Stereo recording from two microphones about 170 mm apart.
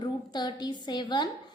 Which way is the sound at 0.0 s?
25° left (ahead or behind).